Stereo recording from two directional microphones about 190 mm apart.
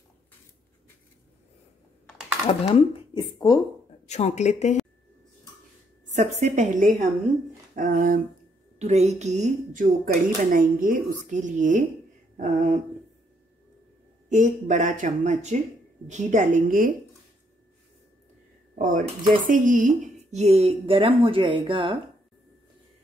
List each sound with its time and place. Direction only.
2.4 s speech: 30° left (ahead or behind)
4.1 s speech: 35° left (ahead or behind)
6.0 s a woman's voice: 40° right (ahead or behind)
8.7 s speech: 35° right (ahead or behind)
14.3 s a woman's voice: 40° right (ahead or behind)
18.8 s speech: 45° right (ahead or behind); by 22.0 s 25° right (ahead or behind)